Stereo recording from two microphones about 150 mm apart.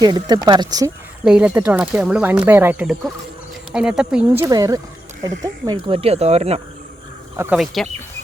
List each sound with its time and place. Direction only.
0.0 s speech: 25° right (ahead or behind)
1.2 s speech: 5° right (ahead or behind)
4.4 s speech: 20° right (ahead or behind); by 6.6 s 45° right (ahead or behind)
7.5 s speech: centre (ahead or behind)